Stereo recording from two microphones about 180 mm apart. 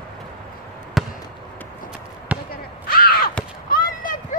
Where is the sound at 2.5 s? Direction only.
55° left (ahead or behind).